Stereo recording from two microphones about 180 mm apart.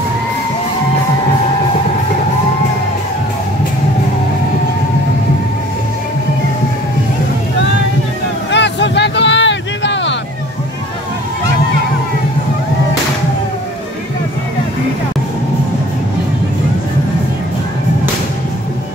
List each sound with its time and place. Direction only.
8.5 s vehicle: 80° left